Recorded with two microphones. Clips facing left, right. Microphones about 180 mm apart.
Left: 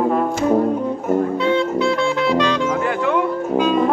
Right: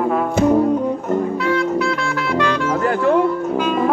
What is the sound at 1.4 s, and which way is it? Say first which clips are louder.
Music: left 1 dB; 25° left (ahead or behind).